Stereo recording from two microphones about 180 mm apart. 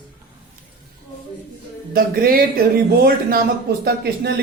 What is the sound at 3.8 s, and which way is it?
Speech, 65° right (ahead or behind).